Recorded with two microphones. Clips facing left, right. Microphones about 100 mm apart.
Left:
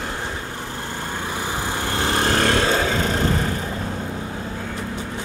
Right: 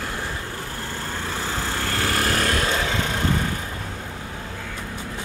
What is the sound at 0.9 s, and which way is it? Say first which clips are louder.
Vehicle: left 2 dB; 15° left (ahead or behind).